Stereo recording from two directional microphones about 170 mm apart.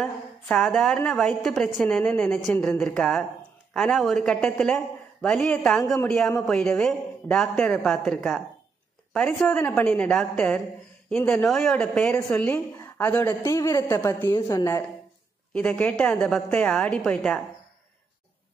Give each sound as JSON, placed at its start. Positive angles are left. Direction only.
{"t": 0.0, "sound": "a woman's voice", "side_deg": 5}
{"t": 15.5, "sound": "a woman's voice", "side_deg": 5}